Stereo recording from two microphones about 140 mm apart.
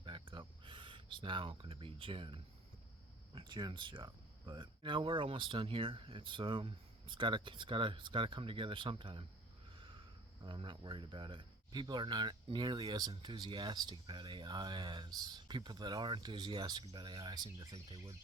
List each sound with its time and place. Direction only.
0.0 s a sound: 35° right (ahead or behind)
3.3 s speech: 35° right (ahead or behind)
9.7 s sniff: 40° right (ahead or behind)
10.4 s speech: 35° right (ahead or behind)